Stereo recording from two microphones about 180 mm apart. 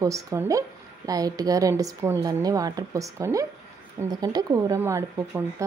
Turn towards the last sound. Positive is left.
turn(degrees=-15)  # may be behind; listen again after turning